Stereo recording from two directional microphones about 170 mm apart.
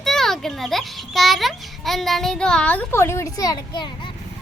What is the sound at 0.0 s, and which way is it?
A child's voice, centre (ahead or behind).